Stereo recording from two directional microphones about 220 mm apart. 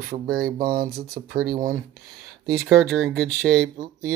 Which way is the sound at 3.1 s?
Centre (ahead or behind).